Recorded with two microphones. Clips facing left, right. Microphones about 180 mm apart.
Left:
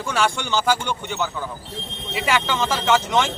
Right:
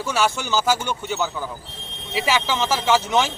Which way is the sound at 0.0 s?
5° right (ahead or behind).